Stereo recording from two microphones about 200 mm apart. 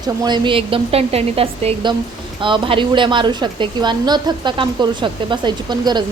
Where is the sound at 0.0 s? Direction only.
20° right (ahead or behind).